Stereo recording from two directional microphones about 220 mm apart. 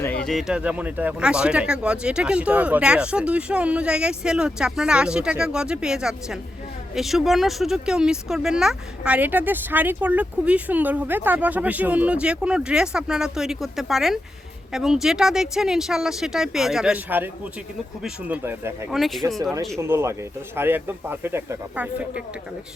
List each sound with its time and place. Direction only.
0.0 s speech: 5° left (ahead or behind)
19.8 s speech: 10° right (ahead or behind)